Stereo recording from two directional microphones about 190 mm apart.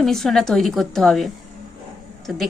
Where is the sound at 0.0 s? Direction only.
Centre (ahead or behind).